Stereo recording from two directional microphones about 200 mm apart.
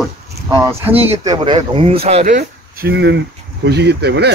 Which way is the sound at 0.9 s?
30° right (ahead or behind).